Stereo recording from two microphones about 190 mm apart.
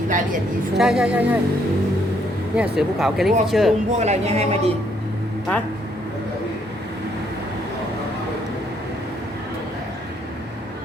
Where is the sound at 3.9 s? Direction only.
35° right (ahead or behind).